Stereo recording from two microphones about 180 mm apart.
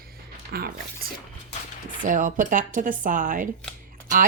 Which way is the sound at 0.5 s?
55° right (ahead or behind).